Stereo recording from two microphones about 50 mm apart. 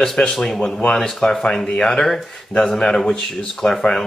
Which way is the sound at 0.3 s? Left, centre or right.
Centre.